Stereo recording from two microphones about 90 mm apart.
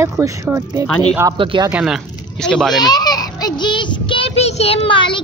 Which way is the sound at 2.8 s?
50° left (ahead or behind).